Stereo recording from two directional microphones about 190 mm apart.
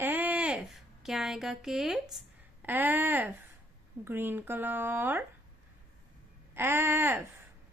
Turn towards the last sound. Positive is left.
turn(degrees=-10)  # may be behind; listen again after turning